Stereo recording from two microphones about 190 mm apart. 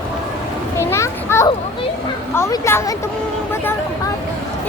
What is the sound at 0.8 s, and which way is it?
Children playing, 15° left (ahead or behind).